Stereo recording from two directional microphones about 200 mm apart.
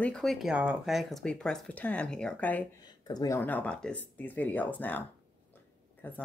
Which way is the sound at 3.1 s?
15° left (ahead or behind).